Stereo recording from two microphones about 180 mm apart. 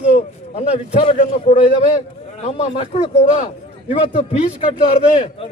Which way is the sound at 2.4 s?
35° left (ahead or behind).